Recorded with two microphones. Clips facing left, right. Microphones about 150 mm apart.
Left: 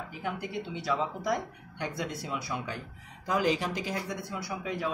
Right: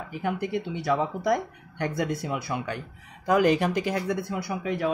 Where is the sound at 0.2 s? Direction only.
55° right (ahead or behind).